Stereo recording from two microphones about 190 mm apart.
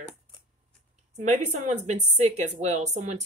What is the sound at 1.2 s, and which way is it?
Speech, 40° right (ahead or behind).